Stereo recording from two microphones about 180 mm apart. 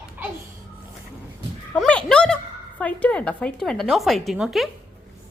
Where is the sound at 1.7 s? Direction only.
5° left (ahead or behind).